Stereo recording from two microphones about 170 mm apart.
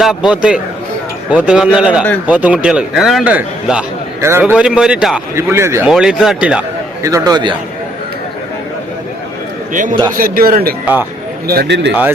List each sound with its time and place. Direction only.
0.0 s a man's voice: 5° right (ahead or behind)
5.9 s a man's voice: 5° right (ahead or behind)
7.0 s a man's voice: 20° right (ahead or behind)
9.7 s a man's voice: 50° right (ahead or behind)
11.4 s a man's voice: 75° right (ahead or behind)